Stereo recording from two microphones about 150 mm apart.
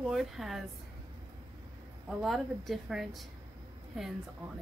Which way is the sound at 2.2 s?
Centre (ahead or behind).